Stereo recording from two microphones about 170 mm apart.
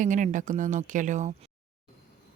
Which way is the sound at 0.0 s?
50° right (ahead or behind).